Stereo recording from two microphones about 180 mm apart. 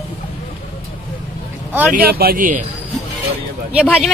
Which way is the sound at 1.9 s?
60° right (ahead or behind).